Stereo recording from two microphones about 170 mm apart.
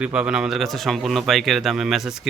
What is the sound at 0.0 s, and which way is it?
A man's voice, 5° right (ahead or behind).